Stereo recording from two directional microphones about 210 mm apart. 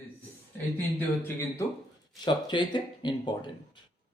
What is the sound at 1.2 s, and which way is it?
Speech, 10° left (ahead or behind).